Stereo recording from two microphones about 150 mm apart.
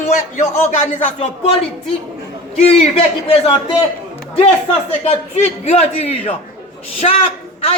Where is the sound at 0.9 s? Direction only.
50° left (ahead or behind).